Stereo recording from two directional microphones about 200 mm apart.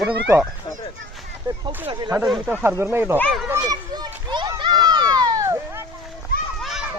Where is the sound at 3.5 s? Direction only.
15° right (ahead or behind).